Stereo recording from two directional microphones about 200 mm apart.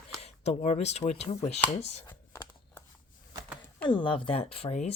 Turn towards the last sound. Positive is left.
turn(degrees=30)  # may be behind; listen again after turning